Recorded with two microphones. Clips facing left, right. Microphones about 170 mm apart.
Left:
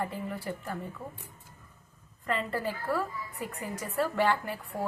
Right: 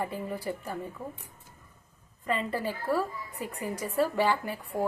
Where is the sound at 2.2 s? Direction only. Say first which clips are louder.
Right 1 dB; 15° right (ahead or behind).